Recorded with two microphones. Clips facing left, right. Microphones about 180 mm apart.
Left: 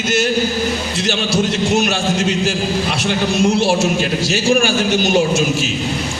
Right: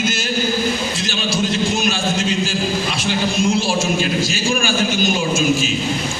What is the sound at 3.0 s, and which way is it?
A man's voice, 70° left (ahead or behind).